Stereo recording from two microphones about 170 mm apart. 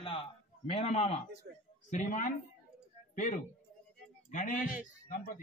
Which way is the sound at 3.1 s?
50° left (ahead or behind).